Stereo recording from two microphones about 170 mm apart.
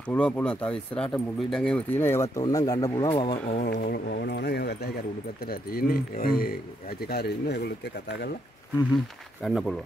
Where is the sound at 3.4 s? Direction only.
60° left (ahead or behind).